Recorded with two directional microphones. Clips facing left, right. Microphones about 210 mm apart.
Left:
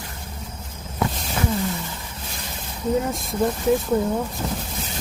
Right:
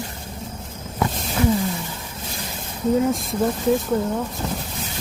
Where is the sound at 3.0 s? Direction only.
Centre (ahead or behind).